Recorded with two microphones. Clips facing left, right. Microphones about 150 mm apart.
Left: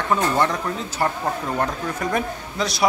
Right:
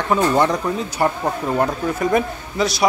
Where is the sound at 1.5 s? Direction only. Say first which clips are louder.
Right 5 dB; 5° right (ahead or behind).